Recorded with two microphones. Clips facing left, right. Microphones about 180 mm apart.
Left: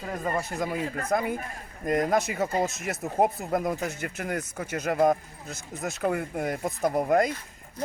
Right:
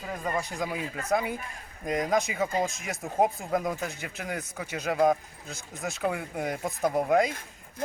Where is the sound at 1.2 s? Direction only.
45° left (ahead or behind).